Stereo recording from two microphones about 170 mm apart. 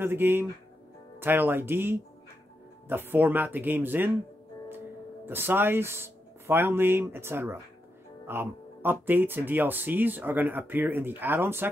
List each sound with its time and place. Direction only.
0.0 s speech: 10° right (ahead or behind)